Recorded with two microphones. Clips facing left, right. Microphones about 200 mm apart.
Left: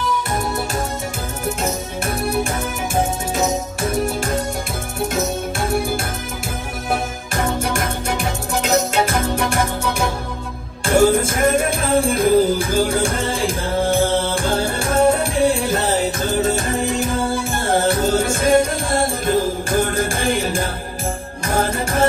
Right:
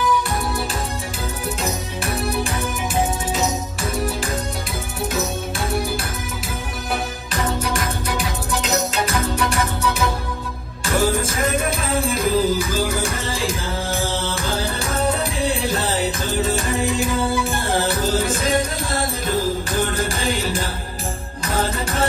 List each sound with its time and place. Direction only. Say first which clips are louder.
3.3 s music: left 3 dB; 50° left (ahead or behind)
5.1 s music: left 2 dB; 50° left (ahead or behind)